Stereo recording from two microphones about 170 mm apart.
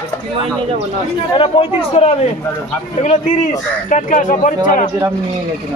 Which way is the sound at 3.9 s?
45° left (ahead or behind).